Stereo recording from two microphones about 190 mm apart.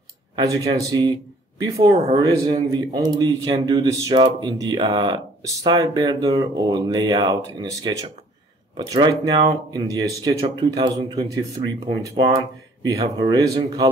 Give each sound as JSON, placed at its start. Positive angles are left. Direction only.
{"t": 0.4, "sound": "a man's voice", "side_deg": -20}